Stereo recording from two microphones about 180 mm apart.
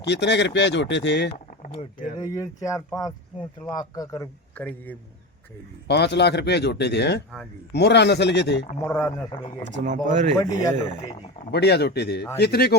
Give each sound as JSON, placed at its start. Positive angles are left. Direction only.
{"t": 0.0, "sound": "speech", "side_deg": 70}
{"t": 1.6, "sound": "speech", "side_deg": 40}
{"t": 2.1, "sound": "speech", "side_deg": 20}
{"t": 5.9, "sound": "speech", "side_deg": 70}
{"t": 8.8, "sound": "speech", "side_deg": 15}
{"t": 9.8, "sound": "speech", "side_deg": -45}
{"t": 10.3, "sound": "speech", "side_deg": 20}
{"t": 11.5, "sound": "speech", "side_deg": 65}